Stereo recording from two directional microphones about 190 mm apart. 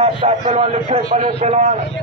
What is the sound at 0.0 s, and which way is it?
A man's voice, 35° right (ahead or behind).